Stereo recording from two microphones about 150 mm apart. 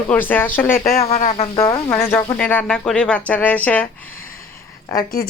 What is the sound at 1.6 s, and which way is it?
A woman's voice, 25° left (ahead or behind).